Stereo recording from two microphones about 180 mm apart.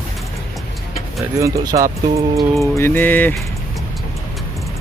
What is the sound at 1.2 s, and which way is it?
Speech, 15° right (ahead or behind).